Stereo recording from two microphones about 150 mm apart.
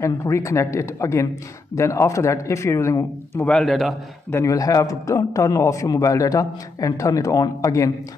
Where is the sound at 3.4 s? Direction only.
5° left (ahead or behind).